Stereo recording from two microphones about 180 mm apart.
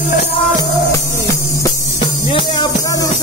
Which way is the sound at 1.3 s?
20° left (ahead or behind).